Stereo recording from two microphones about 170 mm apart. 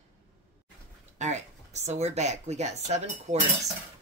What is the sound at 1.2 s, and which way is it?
Speech, 45° right (ahead or behind).